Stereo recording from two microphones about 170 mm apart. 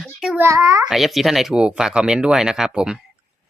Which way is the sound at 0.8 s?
Centre (ahead or behind).